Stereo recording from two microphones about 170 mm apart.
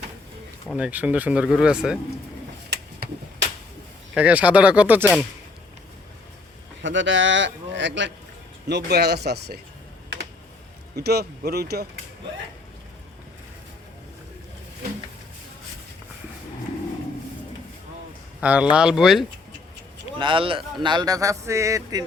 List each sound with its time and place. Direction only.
0.8 s speech: 10° right (ahead or behind)
4.1 s speech: 10° right (ahead or behind)
6.8 s a man's voice: 90° right
8.6 s speech: 75° right (ahead or behind)
10.9 s speech: 70° right (ahead or behind)
18.3 s speech: 5° right (ahead or behind)
20.1 s speech: 30° right (ahead or behind)